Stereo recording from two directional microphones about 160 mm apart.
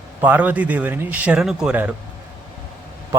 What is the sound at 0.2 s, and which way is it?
A man's voice, 10° right (ahead or behind).